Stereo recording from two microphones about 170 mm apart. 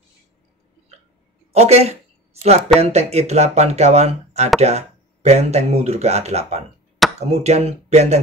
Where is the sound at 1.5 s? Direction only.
40° right (ahead or behind).